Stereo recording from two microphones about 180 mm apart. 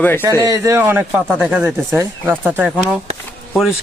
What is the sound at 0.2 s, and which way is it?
A man's voice, 20° right (ahead or behind).